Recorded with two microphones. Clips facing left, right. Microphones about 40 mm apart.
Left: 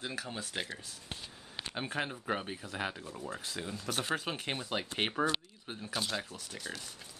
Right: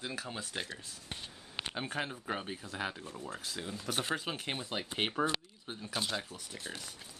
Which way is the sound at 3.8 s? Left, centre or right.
Centre.